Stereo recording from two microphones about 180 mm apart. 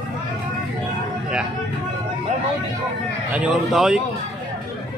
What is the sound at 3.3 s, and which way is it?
Speech, 5° right (ahead or behind).